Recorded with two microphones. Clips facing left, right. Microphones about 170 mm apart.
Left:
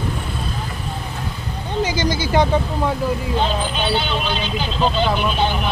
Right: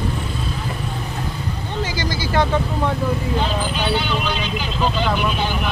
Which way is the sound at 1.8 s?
20° left (ahead or behind).